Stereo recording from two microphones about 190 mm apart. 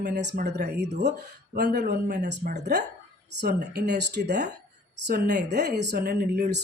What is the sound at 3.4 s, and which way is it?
Speech, 55° right (ahead or behind).